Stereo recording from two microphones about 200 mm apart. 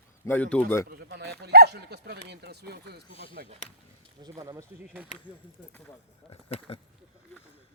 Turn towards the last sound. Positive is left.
turn(degrees=30)  # may be behind; listen again after turning